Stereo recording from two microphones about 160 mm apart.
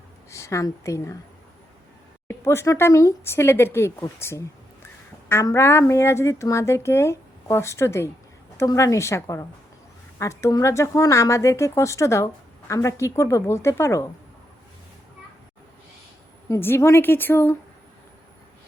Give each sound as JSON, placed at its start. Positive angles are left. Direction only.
{"t": 0.3, "sound": "a woman's voice", "side_deg": 20}
{"t": 2.2, "sound": "a woman's voice", "side_deg": 15}
{"t": 16.5, "sound": "a woman's voice", "side_deg": 15}